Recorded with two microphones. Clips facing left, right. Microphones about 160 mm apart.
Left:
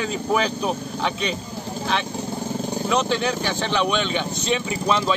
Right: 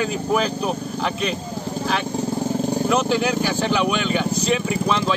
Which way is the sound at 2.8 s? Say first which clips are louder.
Even; 5° right (ahead or behind).